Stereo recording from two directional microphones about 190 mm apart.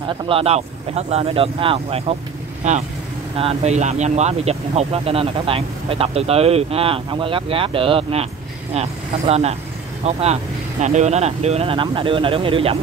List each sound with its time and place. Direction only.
0.0 s speech: 30° right (ahead or behind)